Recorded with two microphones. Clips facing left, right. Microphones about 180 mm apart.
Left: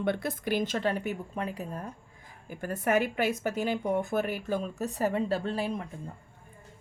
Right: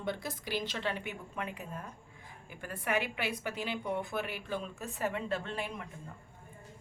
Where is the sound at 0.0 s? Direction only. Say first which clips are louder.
Left 8 dB; 60° left (ahead or behind); by 5.9 s 35° left (ahead or behind).